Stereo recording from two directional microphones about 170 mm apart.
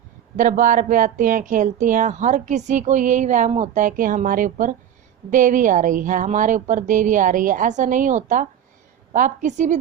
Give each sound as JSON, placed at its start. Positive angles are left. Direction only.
{"t": 0.3, "sound": "speech", "side_deg": -50}